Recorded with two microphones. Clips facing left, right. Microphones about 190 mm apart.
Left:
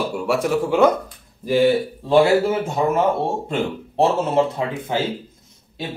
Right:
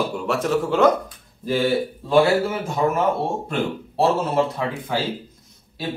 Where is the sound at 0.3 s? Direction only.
10° left (ahead or behind).